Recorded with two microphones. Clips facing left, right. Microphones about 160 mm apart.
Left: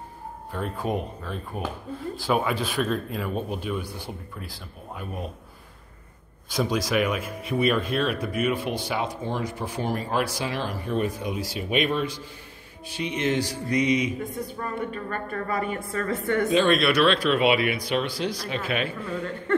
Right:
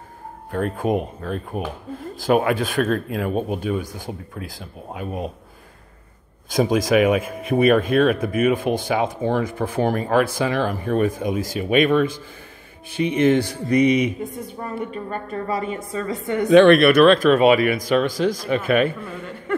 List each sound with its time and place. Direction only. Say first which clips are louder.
0.5 s speech: right 7 dB; 55° right (ahead or behind)
4.4 s speech: right 6 dB; 90° right
6.6 s speech: right 7 dB; 50° right (ahead or behind)
12.9 s music: right 8 dB; 55° right (ahead or behind)
14.6 s a woman's voice: right 4 dB; 20° right (ahead or behind)
16.4 s speech: right 11 dB; 70° right (ahead or behind); by 18.9 s 50° right (ahead or behind)